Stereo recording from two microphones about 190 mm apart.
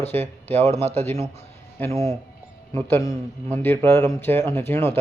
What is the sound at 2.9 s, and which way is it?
Speech, 15° left (ahead or behind).